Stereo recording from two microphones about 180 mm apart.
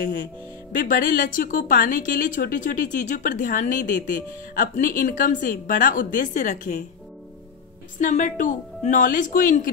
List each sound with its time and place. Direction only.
0.7 s a woman's voice: 50° left (ahead or behind)
8.0 s a woman's voice: 45° left (ahead or behind)